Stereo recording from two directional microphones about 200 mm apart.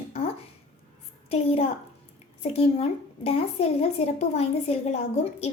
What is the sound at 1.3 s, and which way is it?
A woman's voice, 30° left (ahead or behind).